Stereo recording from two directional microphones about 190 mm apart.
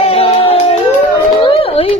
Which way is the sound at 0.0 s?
30° left (ahead or behind).